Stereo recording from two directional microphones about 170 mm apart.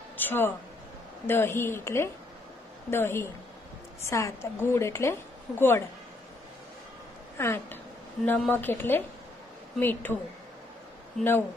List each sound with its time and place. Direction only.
0.2 s a sound: 10° left (ahead or behind)
1.2 s a woman's voice: 15° left (ahead or behind)
7.3 s a woman's voice: 15° left (ahead or behind)
11.1 s a woman's voice: 15° left (ahead or behind)